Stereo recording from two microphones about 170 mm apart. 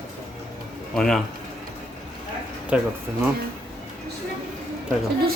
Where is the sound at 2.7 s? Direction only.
5° right (ahead or behind).